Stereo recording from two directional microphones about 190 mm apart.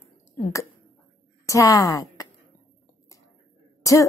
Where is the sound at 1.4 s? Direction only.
15° left (ahead or behind).